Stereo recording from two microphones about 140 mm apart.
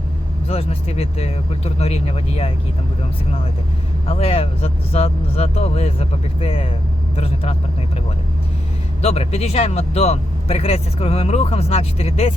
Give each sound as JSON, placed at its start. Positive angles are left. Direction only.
{"t": 0.4, "sound": "speech", "side_deg": 45}
{"t": 4.0, "sound": "speech", "side_deg": 45}
{"t": 9.0, "sound": "speech", "side_deg": 45}